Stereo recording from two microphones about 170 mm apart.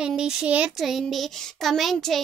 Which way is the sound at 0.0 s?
5° right (ahead or behind).